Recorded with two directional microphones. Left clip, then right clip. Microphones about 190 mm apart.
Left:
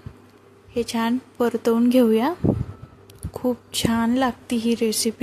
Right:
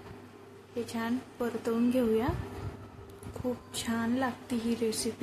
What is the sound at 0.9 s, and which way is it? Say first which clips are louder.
Speech: left 10 dB; 50° left (ahead or behind).